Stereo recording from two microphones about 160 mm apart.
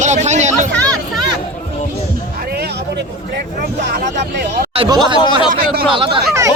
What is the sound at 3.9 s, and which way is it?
Speech, 70° right (ahead or behind).